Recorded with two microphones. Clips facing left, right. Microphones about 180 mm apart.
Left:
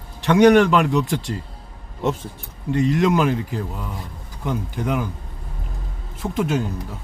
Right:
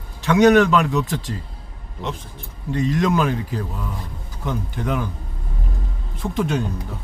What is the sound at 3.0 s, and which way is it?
Speech, 15° left (ahead or behind).